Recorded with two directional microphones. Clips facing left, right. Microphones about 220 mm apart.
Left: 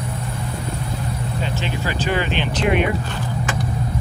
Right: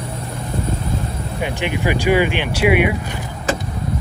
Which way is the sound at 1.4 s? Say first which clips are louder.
Right 6 dB; 15° right (ahead or behind).